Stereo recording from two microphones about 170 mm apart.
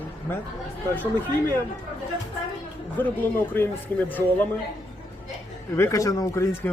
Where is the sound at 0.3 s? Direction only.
10° left (ahead or behind).